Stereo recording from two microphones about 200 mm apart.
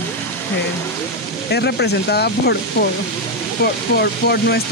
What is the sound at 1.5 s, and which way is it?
Speech, 55° left (ahead or behind).